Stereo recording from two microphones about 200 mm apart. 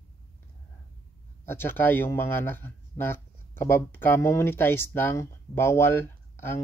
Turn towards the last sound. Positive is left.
turn(degrees=10)  # may be behind; listen again after turning